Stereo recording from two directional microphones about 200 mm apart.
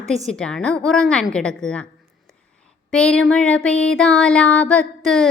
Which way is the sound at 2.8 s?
5° left (ahead or behind).